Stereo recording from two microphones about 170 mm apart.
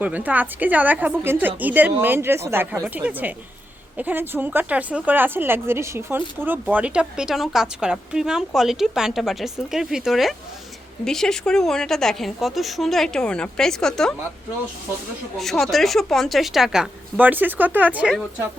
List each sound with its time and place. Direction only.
0.0 s a woman's voice: 10° right (ahead or behind)
15.4 s a woman's voice: centre (ahead or behind)